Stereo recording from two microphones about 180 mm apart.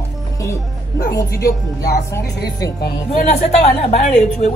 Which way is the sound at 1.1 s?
20° left (ahead or behind).